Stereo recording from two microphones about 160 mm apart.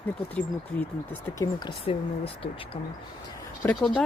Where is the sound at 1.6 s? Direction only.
35° left (ahead or behind).